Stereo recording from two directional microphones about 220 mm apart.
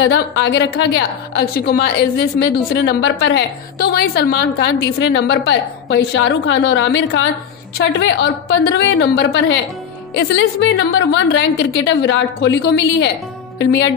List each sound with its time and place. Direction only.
0.0 s a woman's voice: 50° left (ahead or behind)